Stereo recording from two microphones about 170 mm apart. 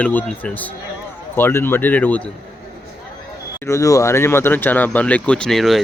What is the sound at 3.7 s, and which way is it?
Speech, 20° left (ahead or behind).